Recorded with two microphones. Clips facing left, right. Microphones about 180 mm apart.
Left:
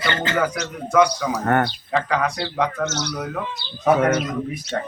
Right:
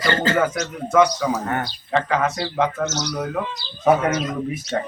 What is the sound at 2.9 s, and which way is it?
Speech, 60° left (ahead or behind).